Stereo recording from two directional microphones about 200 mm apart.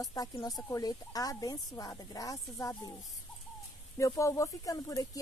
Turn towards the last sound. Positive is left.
turn(degrees=15)  # may be behind; listen again after turning